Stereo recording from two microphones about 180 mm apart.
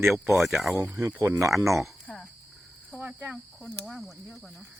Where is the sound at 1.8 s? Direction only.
5° left (ahead or behind).